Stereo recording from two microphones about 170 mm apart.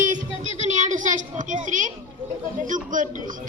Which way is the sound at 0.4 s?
30° left (ahead or behind).